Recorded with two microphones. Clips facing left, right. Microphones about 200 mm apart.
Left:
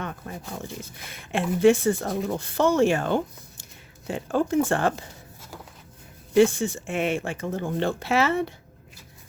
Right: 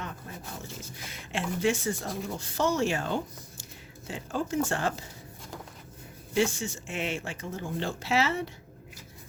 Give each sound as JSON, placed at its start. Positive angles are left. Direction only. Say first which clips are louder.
{"t": 0.3, "sound": "a sound", "louder": "left 6 dB", "side_deg": 55}
{"t": 0.8, "sound": "speech", "louder": "left 2 dB", "side_deg": 60}
{"t": 6.3, "sound": "speech", "louder": "left 9 dB", "side_deg": 55}